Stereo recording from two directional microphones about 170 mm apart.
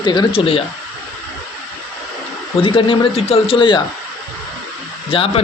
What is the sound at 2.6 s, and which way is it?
A man's voice, 30° left (ahead or behind).